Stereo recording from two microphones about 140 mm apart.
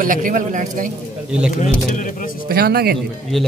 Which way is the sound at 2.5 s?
90° right.